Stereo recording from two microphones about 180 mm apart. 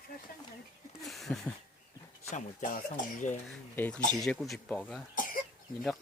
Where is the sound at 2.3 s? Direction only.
50° left (ahead or behind).